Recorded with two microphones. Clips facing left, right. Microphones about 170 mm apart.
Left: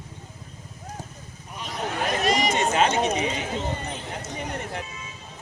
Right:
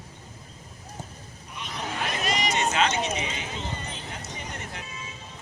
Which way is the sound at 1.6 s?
45° left (ahead or behind).